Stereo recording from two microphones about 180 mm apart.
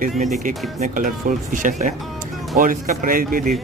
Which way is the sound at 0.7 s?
45° right (ahead or behind).